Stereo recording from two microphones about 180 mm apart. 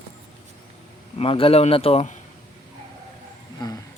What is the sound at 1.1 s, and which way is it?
A man's voice, 30° left (ahead or behind).